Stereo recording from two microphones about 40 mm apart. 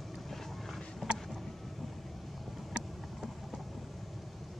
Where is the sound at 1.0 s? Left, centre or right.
Centre.